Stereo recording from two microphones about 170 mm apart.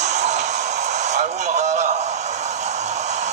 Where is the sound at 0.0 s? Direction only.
40° right (ahead or behind).